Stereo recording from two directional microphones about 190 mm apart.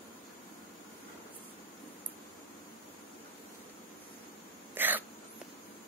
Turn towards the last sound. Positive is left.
turn(degrees=-10)  # may be behind; listen again after turning